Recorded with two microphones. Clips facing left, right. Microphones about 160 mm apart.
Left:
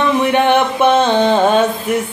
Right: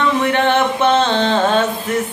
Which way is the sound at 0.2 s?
15° left (ahead or behind).